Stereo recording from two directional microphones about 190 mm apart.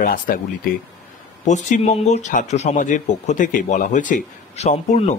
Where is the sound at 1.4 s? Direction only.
40° left (ahead or behind).